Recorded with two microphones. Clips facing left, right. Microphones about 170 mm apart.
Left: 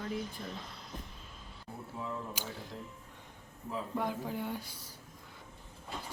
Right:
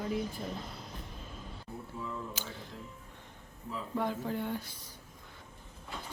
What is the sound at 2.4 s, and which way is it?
Music, 10° left (ahead or behind).